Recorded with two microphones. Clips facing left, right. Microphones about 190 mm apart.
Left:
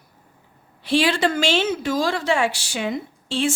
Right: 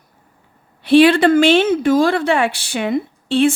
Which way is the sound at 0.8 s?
60° right (ahead or behind).